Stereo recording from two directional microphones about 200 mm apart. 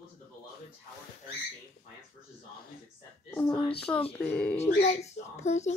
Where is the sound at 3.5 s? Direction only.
25° left (ahead or behind).